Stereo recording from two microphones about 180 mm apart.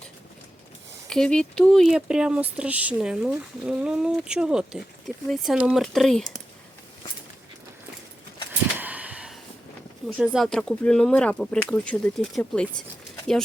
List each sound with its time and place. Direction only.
1.1 s speech: 5° left (ahead or behind)
8.8 s a sound: 10° right (ahead or behind)
10.1 s speech: centre (ahead or behind)